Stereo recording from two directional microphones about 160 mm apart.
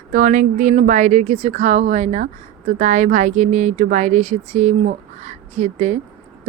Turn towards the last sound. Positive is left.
turn(degrees=-45)  # may be behind; listen again after turning